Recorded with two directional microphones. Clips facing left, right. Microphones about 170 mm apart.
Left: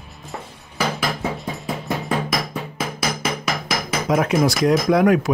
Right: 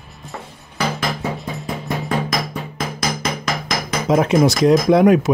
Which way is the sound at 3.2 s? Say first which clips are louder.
Right 1 dB; 5° left (ahead or behind).